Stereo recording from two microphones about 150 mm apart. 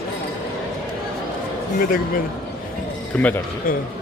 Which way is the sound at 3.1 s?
10° left (ahead or behind).